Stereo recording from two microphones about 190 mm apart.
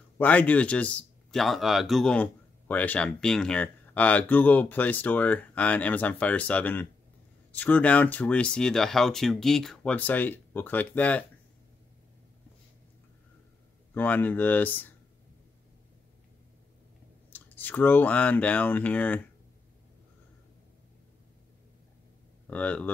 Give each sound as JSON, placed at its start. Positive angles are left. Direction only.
{"t": 0.2, "sound": "speech", "side_deg": 10}
{"t": 13.9, "sound": "speech", "side_deg": 10}
{"t": 17.3, "sound": "speech", "side_deg": 10}
{"t": 22.5, "sound": "speech", "side_deg": 5}